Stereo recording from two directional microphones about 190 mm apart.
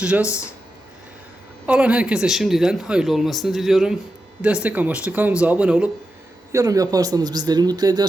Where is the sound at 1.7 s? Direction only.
5° right (ahead or behind).